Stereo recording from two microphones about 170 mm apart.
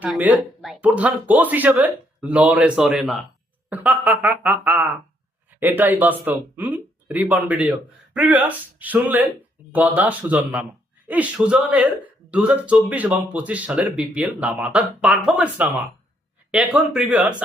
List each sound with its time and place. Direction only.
0.0 s speech: 5° right (ahead or behind)